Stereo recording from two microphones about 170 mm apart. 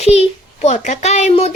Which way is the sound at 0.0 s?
40° left (ahead or behind).